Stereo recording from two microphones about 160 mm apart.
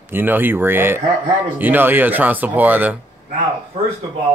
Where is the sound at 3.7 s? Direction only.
35° right (ahead or behind).